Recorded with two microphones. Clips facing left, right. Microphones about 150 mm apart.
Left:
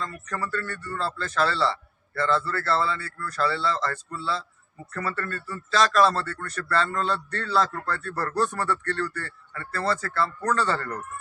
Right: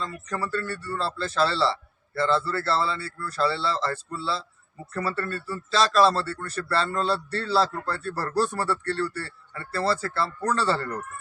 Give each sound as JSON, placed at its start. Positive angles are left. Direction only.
{"t": 0.0, "sound": "a man's voice", "side_deg": -30}